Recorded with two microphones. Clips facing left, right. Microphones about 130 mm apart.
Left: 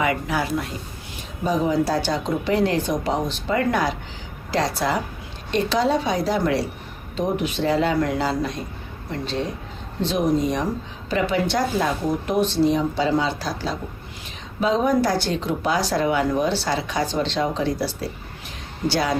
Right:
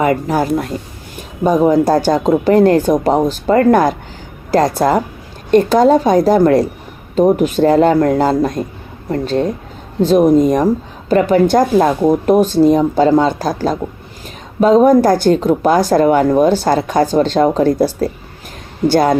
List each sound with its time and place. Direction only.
0.0 s speech: 45° right (ahead or behind)